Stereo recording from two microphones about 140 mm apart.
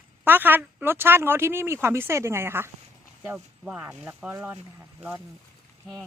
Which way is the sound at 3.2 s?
5° right (ahead or behind).